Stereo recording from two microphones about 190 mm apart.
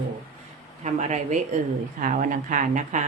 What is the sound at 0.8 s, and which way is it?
Speech, 35° right (ahead or behind).